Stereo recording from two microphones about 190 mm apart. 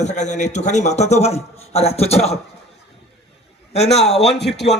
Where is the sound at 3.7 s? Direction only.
35° left (ahead or behind).